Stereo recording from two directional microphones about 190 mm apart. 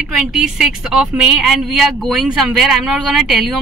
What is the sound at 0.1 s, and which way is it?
A woman's voice, centre (ahead or behind).